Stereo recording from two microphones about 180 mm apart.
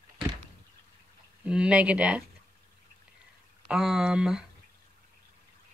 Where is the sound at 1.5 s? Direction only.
5° right (ahead or behind).